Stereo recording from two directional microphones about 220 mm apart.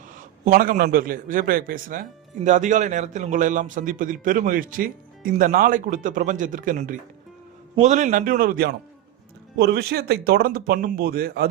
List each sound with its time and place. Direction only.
0.4 s speech: 40° right (ahead or behind)